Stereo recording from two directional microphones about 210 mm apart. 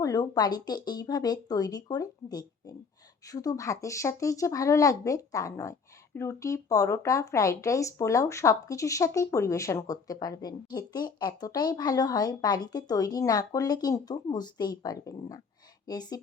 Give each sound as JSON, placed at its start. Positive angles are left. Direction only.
{"t": 0.0, "sound": "speech", "side_deg": 15}